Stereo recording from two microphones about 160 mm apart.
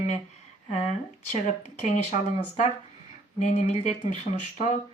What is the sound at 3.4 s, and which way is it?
Speech, 45° left (ahead or behind).